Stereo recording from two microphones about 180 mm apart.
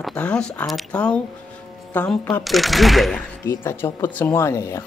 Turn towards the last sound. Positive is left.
turn(degrees=15)  # may be behind; listen again after turning